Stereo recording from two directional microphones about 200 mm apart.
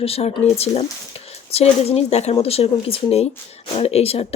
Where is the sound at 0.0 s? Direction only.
30° left (ahead or behind).